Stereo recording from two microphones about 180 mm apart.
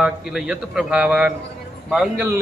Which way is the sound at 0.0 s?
5° right (ahead or behind).